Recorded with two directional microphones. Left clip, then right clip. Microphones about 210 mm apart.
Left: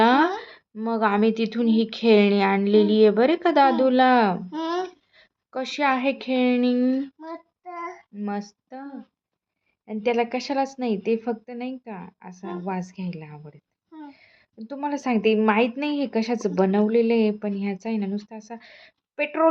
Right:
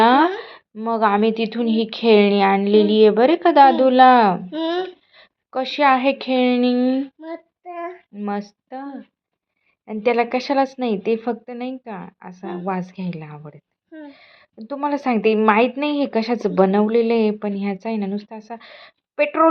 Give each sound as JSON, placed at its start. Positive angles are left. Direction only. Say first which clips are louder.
{"t": 0.0, "sound": "a woman's voice", "louder": "right 4 dB", "side_deg": 0}
{"t": 4.5, "sound": "a child's voice", "louder": "right 4 dB", "side_deg": 20}
{"t": 5.1, "sound": "a woman's voice", "louder": "right 8 dB", "side_deg": -5}
{"t": 7.2, "sound": "child singing", "louder": "right 4 dB", "side_deg": 20}
{"t": 7.9, "sound": "child singing", "louder": "right 6 dB", "side_deg": 0}
{"t": 8.7, "sound": "a woman's voice", "louder": "right 6 dB", "side_deg": -5}